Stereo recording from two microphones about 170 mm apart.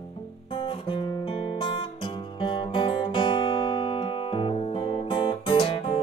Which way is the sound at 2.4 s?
30° left (ahead or behind).